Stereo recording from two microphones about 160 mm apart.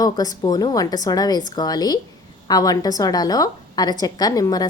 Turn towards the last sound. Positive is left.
turn(degrees=25)  # may be behind; listen again after turning